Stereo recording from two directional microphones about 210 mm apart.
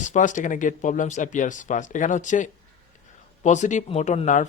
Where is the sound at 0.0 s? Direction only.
35° left (ahead or behind).